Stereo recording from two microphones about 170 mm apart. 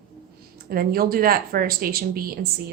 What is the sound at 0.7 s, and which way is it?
Speech, 60° right (ahead or behind).